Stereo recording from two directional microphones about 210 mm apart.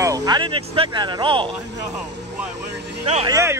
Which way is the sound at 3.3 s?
15° right (ahead or behind).